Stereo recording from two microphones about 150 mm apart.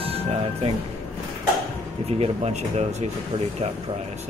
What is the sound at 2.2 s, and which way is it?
Speech, 45° right (ahead or behind).